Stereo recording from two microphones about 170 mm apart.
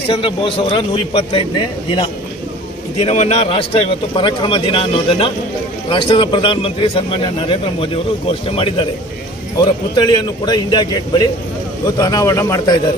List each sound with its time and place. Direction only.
0.1 s a man's voice: 30° left (ahead or behind)
3.0 s a man's voice: 40° left (ahead or behind); by 12.7 s 20° left (ahead or behind)